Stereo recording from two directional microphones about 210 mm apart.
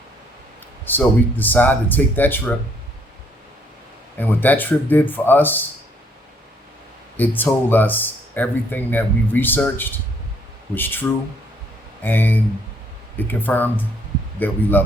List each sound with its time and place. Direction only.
0.9 s speech: 10° left (ahead or behind)
4.2 s speech: 10° left (ahead or behind)
7.2 s speech: 10° left (ahead or behind)
12.0 s speech: 10° left (ahead or behind)